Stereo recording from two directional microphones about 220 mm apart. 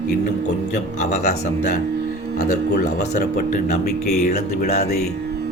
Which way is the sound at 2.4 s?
35° left (ahead or behind).